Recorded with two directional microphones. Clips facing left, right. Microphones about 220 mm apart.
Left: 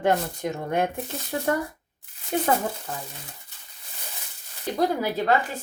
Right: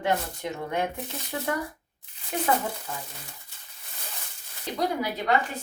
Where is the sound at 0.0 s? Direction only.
50° left (ahead or behind).